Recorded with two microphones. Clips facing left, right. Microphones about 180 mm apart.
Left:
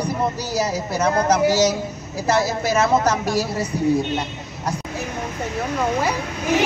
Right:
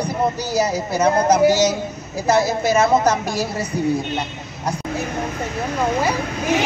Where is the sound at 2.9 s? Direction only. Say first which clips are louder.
Right 1 dB; 20° right (ahead or behind).